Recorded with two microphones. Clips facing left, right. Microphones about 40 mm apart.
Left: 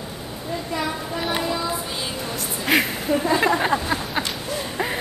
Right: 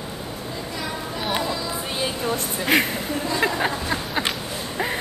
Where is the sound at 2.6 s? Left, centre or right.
Centre.